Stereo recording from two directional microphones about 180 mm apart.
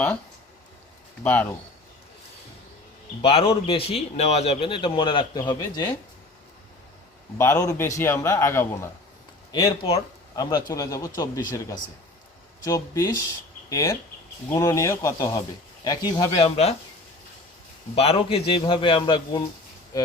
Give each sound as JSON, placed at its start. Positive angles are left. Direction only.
{"t": 1.2, "sound": "a man's voice", "side_deg": 10}
{"t": 3.2, "sound": "speech", "side_deg": 30}
{"t": 7.3, "sound": "a man's voice", "side_deg": 15}
{"t": 9.5, "sound": "speech", "side_deg": 25}
{"t": 12.6, "sound": "a man's voice", "side_deg": 20}
{"t": 17.9, "sound": "speech", "side_deg": 35}